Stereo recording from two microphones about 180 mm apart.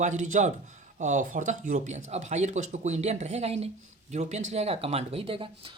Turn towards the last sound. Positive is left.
turn(degrees=-30)  # may be behind; listen again after turning